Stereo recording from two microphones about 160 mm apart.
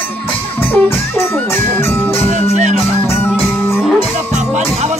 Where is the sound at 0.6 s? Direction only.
15° left (ahead or behind).